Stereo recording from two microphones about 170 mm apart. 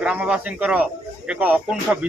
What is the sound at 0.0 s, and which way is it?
Speech, 5° right (ahead or behind).